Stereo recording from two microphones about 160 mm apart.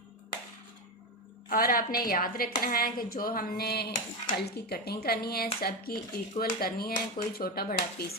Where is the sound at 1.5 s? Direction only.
65° left (ahead or behind).